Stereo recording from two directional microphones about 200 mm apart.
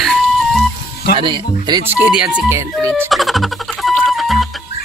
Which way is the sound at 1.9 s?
10° right (ahead or behind).